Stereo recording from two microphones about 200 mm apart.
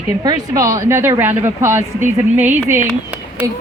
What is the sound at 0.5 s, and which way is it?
Speech, 15° right (ahead or behind).